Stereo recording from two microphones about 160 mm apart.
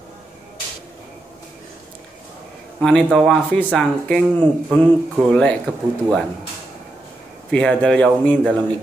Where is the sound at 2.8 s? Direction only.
5° left (ahead or behind).